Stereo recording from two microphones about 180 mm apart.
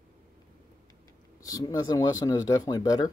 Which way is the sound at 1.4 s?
20° left (ahead or behind).